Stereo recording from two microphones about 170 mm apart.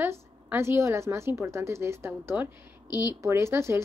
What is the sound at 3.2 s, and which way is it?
Speech, 15° right (ahead or behind).